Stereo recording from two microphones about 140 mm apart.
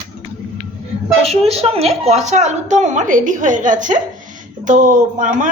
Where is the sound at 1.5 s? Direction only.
50° right (ahead or behind).